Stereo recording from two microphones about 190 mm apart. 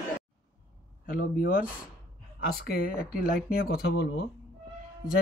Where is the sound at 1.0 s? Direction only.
50° left (ahead or behind).